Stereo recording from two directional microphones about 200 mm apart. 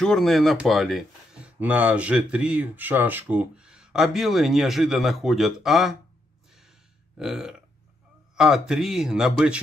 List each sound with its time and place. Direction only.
0.0 s speech: centre (ahead or behind)
7.2 s speech: centre (ahead or behind)